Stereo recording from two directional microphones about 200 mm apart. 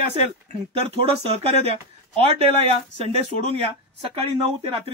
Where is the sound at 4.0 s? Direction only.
30° right (ahead or behind).